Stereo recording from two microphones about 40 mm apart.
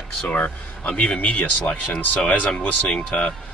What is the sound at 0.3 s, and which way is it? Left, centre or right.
Speech, left.